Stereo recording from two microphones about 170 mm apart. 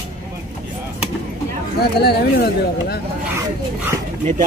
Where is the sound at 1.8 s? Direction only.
70° left (ahead or behind).